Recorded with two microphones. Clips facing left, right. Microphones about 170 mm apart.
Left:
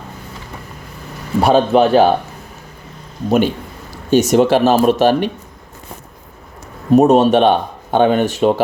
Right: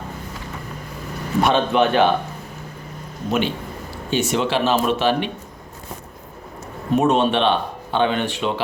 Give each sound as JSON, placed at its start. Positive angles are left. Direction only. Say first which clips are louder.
{"t": 1.4, "sound": "a man's voice", "louder": "left 6 dB", "side_deg": 35}
{"t": 3.2, "sound": "speech", "louder": "left 7 dB", "side_deg": 45}
{"t": 6.9, "sound": "speech", "louder": "left 7 dB", "side_deg": 40}